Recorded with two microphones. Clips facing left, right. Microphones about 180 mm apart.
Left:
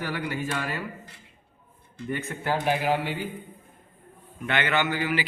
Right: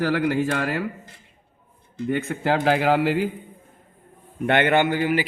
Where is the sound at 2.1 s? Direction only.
90° right.